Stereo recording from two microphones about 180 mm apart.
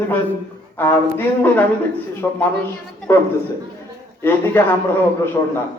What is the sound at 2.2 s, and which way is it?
A man's voice, 15° left (ahead or behind).